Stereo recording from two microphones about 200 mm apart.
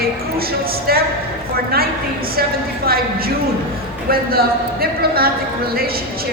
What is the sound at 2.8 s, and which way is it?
Speech, 50° right (ahead or behind).